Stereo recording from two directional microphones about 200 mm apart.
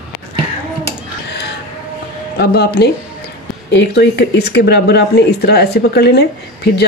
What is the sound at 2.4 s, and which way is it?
Speech, 55° left (ahead or behind).